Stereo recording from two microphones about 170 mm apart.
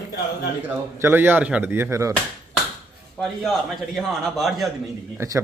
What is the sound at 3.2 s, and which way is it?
A man's voice, centre (ahead or behind).